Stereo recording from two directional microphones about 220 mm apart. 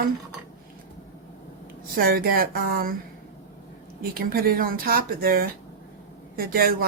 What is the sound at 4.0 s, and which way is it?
Speech, 45° right (ahead or behind).